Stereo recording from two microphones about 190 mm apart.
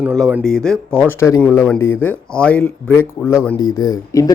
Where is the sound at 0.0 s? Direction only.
5° right (ahead or behind).